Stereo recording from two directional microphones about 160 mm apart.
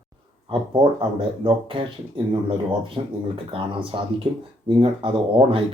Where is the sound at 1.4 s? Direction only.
35° right (ahead or behind).